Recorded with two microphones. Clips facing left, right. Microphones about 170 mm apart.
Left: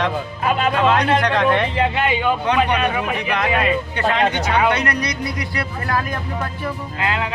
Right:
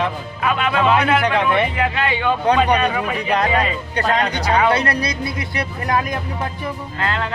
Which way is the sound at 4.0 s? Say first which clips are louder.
Right 2 dB; 40° right (ahead or behind).